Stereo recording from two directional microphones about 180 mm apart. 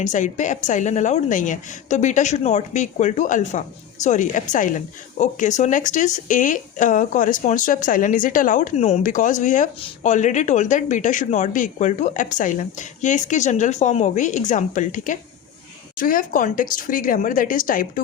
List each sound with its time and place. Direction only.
0.0 s speech: 45° left (ahead or behind)